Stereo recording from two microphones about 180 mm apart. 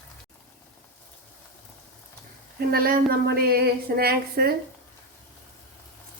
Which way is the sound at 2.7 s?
55° right (ahead or behind).